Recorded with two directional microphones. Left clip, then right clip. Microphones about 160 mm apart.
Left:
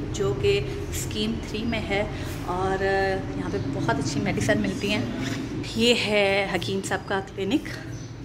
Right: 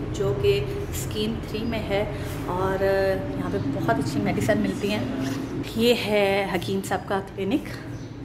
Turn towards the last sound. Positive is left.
turn(degrees=0)  # may be behind; listen again after turning